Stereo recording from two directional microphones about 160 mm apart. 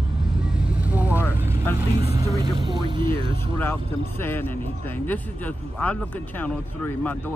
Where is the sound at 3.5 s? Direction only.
10° left (ahead or behind).